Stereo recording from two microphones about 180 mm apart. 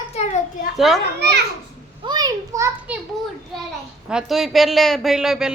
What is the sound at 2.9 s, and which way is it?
A child's voice, 5° right (ahead or behind).